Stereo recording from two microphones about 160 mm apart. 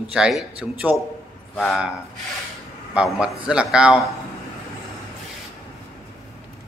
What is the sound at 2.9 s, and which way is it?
Speech, 5° right (ahead or behind).